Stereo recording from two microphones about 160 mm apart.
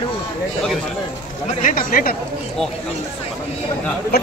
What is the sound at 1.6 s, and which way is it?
Speech, 60° left (ahead or behind).